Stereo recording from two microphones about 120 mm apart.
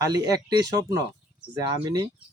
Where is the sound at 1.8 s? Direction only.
40° right (ahead or behind).